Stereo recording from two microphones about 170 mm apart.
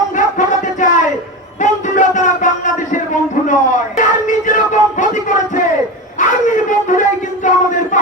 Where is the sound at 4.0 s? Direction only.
50° left (ahead or behind).